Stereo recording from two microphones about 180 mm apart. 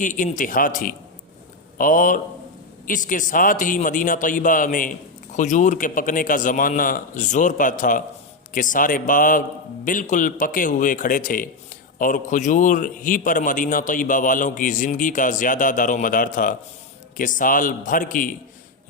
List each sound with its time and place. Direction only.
0.0 s a man's voice: 45° left (ahead or behind)